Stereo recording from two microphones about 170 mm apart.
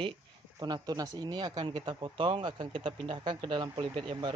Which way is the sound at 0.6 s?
25° right (ahead or behind).